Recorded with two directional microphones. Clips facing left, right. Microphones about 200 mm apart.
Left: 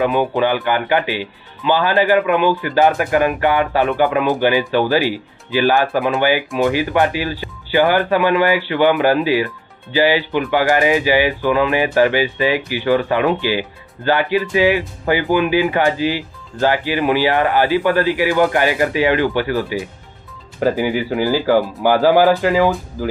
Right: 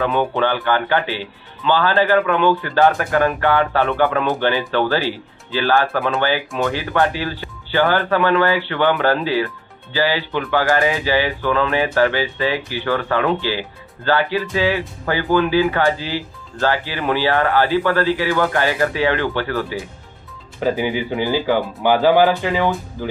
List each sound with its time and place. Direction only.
0.0 s speech: 15° left (ahead or behind)
20.8 s speech: 5° left (ahead or behind)